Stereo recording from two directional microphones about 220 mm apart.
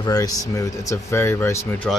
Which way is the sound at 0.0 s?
15° left (ahead or behind).